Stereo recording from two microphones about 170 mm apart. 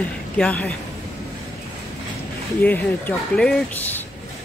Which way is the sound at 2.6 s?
10° left (ahead or behind).